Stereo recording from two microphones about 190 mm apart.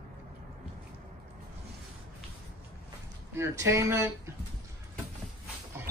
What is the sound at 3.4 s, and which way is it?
Speech, 15° right (ahead or behind).